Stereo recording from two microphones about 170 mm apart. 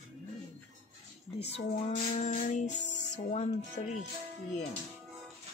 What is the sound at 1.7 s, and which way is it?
Speech, 40° left (ahead or behind).